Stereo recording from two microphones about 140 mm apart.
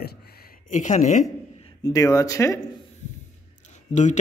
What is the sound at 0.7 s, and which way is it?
Speech, 60° left (ahead or behind).